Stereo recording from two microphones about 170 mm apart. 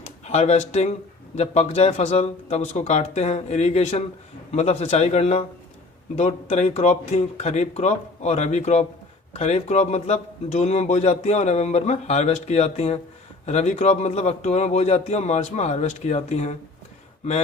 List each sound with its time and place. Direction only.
0.3 s a man's voice: 40° left (ahead or behind)